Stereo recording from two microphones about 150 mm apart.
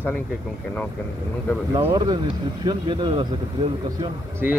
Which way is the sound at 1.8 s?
25° right (ahead or behind).